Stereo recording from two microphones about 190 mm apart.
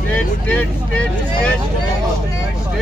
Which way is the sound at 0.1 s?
10° left (ahead or behind).